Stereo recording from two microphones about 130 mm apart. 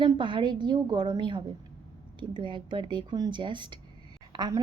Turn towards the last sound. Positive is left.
turn(degrees=-35)  # may be behind; listen again after turning